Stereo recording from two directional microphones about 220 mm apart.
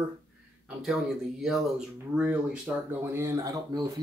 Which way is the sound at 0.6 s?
Centre (ahead or behind).